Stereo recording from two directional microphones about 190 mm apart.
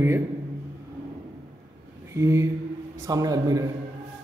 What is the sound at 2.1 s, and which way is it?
A man's voice, 15° right (ahead or behind).